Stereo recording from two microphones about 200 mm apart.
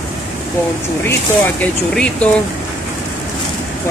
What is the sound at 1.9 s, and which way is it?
Speech, 5° left (ahead or behind).